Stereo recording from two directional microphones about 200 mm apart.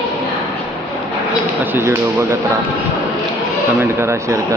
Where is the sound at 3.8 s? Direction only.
10° right (ahead or behind).